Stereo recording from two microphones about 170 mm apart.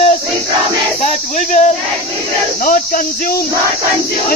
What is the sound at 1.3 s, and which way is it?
Speech, 45° left (ahead or behind).